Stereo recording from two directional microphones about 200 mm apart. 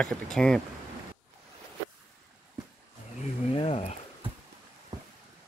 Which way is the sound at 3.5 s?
25° left (ahead or behind).